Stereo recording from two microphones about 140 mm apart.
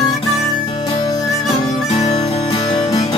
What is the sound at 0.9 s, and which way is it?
Music, 30° left (ahead or behind).